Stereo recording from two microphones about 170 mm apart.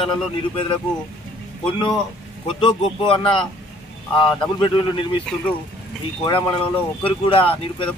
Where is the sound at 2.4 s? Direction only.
30° left (ahead or behind).